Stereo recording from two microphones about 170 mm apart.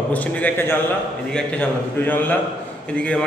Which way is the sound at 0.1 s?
10° left (ahead or behind).